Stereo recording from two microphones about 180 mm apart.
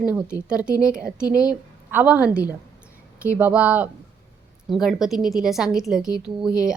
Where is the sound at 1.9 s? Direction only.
10° right (ahead or behind).